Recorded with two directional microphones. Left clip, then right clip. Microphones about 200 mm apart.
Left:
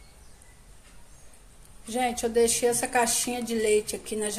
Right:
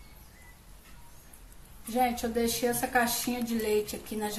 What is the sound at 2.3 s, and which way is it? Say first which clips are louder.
Speech: left 6 dB; 35° left (ahead or behind).